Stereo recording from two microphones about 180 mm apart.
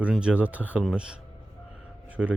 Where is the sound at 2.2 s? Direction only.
Centre (ahead or behind).